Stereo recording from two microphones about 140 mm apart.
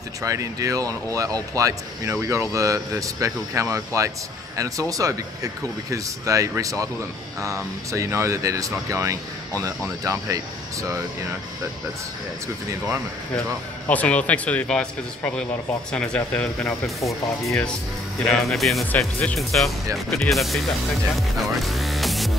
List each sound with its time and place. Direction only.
0.2 s speech: 25° right (ahead or behind)
13.8 s speech: 10° left (ahead or behind)
18.2 s speech: centre (ahead or behind)